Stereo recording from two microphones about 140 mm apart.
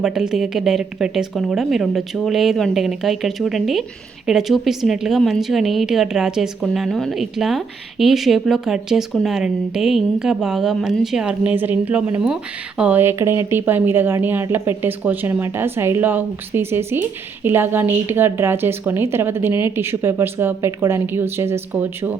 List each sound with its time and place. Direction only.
0.0 s a woman's voice: 5° right (ahead or behind)